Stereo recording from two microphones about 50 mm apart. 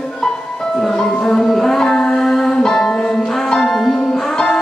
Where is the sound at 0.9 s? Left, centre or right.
Centre.